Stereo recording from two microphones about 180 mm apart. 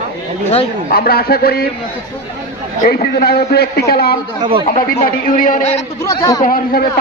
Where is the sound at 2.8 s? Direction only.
55° left (ahead or behind).